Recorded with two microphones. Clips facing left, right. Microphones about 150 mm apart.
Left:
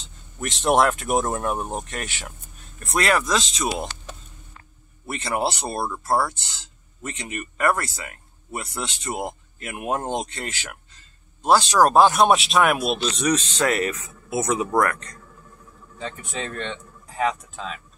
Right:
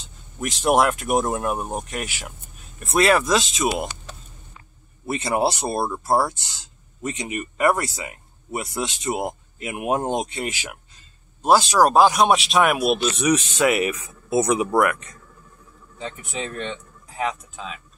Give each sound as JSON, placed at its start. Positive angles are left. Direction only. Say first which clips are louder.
{"t": 0.0, "sound": "speech", "louder": "right 2 dB", "side_deg": 0}
{"t": 5.0, "sound": "speech", "louder": "right 3 dB", "side_deg": -15}
{"t": 11.8, "sound": "speech", "louder": "left 1 dB", "side_deg": 0}